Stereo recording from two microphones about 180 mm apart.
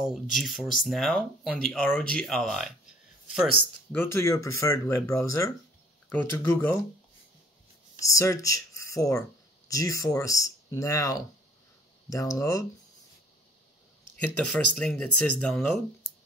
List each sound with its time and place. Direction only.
0.0 s speech: centre (ahead or behind)
3.9 s speech: 15° left (ahead or behind)
8.0 s speech: 15° left (ahead or behind)
14.1 s speech: 5° left (ahead or behind)